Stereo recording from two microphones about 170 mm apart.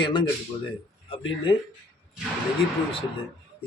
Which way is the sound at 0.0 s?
30° left (ahead or behind).